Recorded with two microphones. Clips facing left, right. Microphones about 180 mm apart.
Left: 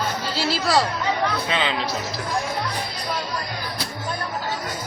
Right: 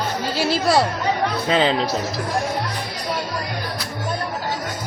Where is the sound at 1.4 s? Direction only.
35° right (ahead or behind).